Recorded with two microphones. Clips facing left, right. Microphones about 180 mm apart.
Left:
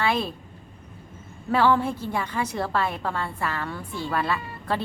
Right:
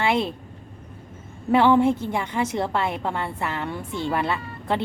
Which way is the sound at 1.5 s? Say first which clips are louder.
Right 4 dB; 20° right (ahead or behind).